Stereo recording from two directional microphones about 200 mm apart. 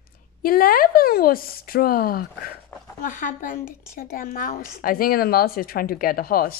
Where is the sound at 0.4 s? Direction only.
45° left (ahead or behind).